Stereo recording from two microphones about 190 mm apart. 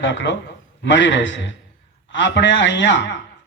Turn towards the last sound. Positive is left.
turn(degrees=70)  # may be behind; listen again after turning